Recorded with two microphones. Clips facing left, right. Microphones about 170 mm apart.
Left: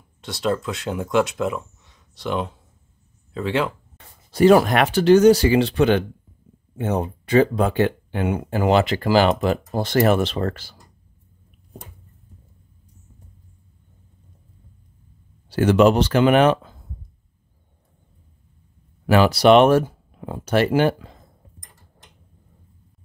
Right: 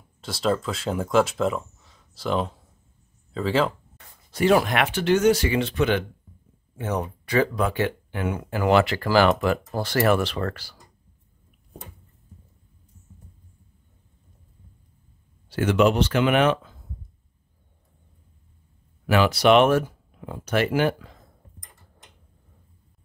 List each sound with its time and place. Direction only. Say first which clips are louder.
0.2 s speech: left 1 dB; centre (ahead or behind)
4.3 s speech: left 6 dB; 40° left (ahead or behind); by 10.8 s 20° left (ahead or behind)
15.5 s speech: left 5 dB; 35° left (ahead or behind)
19.0 s speech: left 4 dB; 35° left (ahead or behind)